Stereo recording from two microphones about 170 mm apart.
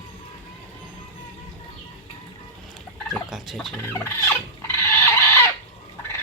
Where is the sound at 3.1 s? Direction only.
Centre (ahead or behind).